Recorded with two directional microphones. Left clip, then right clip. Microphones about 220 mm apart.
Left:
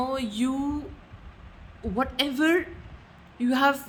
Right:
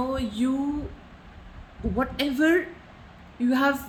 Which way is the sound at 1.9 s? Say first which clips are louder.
Even; 15° left (ahead or behind).